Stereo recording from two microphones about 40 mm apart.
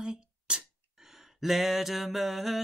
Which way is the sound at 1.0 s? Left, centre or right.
Centre.